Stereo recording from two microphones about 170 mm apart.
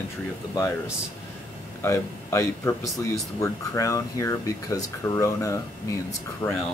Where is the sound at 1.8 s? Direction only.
15° left (ahead or behind).